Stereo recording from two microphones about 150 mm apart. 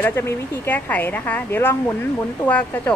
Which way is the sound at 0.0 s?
15° left (ahead or behind).